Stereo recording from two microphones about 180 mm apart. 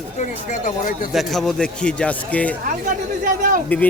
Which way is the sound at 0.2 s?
45° left (ahead or behind).